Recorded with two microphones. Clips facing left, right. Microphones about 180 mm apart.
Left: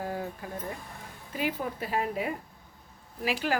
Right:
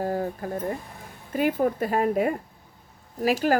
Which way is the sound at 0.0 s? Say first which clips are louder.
Right 7 dB; 40° right (ahead or behind).